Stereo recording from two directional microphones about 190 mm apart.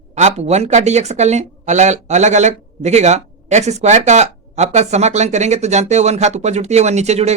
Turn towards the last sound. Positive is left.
turn(degrees=-35)  # may be behind; listen again after turning